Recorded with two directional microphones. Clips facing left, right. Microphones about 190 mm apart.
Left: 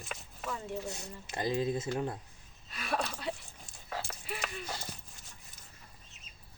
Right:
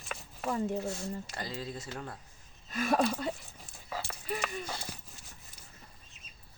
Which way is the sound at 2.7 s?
45° right (ahead or behind).